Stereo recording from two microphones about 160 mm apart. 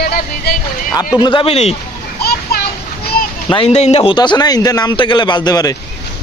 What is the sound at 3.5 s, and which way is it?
A man's voice, 40° left (ahead or behind).